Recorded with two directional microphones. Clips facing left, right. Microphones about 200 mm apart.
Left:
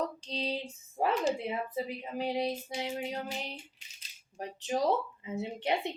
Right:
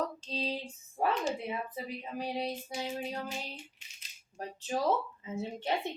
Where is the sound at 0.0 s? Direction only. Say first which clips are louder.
Left 1 dB; 15° left (ahead or behind).